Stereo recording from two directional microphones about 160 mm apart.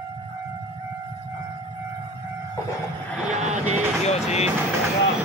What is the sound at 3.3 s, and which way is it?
Music, 45° right (ahead or behind).